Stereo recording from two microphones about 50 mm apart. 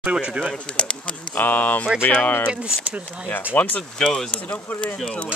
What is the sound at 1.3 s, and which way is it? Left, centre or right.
Speech, left.